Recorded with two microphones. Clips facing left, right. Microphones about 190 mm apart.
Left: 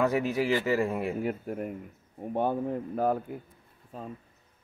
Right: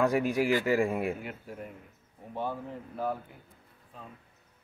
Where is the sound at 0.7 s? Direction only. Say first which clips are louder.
Even; centre (ahead or behind).